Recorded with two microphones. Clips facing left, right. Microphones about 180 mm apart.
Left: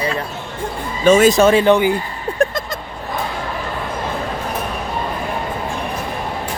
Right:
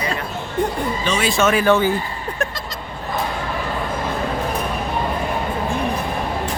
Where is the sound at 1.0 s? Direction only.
45° left (ahead or behind); by 2.0 s 15° left (ahead or behind).